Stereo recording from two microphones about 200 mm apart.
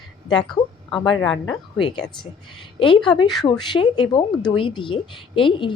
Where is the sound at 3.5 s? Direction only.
25° left (ahead or behind).